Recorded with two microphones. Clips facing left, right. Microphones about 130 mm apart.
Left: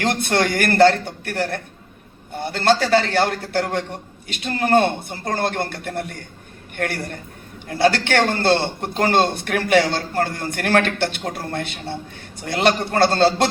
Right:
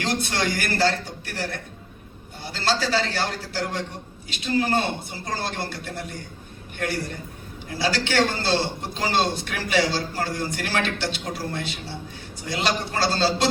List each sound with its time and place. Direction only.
0.0 s a man's voice: 55° left (ahead or behind)